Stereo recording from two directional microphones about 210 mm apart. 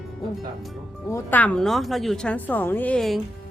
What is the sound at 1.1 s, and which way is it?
A woman's voice, 10° left (ahead or behind).